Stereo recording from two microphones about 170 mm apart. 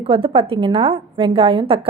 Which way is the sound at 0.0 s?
30° right (ahead or behind).